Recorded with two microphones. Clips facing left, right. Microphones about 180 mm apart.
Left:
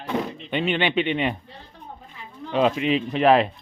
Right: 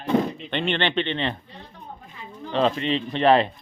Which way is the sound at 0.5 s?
5° left (ahead or behind).